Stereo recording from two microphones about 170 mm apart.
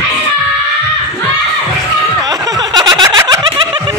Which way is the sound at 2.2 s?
20° right (ahead or behind).